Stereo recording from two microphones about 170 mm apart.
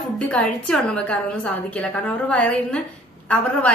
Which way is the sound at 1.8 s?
5° left (ahead or behind).